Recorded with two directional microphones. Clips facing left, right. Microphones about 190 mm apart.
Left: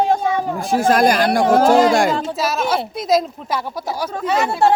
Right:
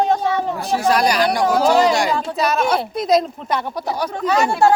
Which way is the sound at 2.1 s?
Centre (ahead or behind).